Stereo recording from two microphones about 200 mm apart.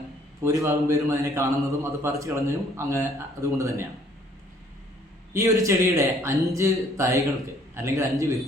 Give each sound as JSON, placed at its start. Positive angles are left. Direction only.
{"t": 0.4, "sound": "a man's voice", "side_deg": -15}
{"t": 5.6, "sound": "a man's voice", "side_deg": -15}